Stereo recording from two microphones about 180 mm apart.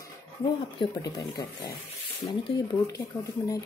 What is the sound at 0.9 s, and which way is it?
Speech, 20° left (ahead or behind).